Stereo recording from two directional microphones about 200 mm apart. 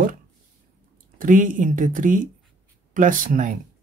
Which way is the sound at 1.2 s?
40° right (ahead or behind).